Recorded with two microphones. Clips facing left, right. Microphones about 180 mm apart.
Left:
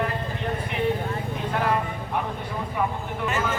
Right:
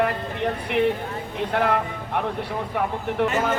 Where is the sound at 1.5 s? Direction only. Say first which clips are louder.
Right 3 dB; 65° right (ahead or behind).